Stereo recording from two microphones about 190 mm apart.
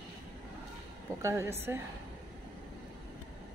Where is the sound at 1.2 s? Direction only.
15° right (ahead or behind).